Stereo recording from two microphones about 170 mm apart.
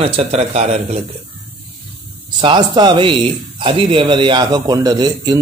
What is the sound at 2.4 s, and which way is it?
A man's voice, 30° right (ahead or behind).